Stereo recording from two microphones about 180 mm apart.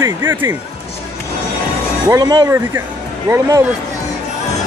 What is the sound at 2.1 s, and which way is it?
Speech, 20° right (ahead or behind).